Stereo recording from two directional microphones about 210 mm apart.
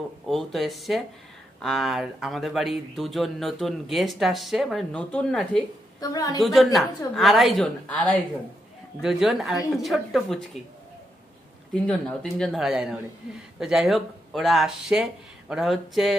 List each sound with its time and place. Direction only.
0.3 s speech: centre (ahead or behind)
5.9 s a woman's voice: 15° left (ahead or behind)
6.4 s speech: centre (ahead or behind)
11.7 s speech: 5° left (ahead or behind)